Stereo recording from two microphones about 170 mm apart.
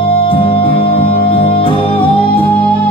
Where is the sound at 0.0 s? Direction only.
30° left (ahead or behind).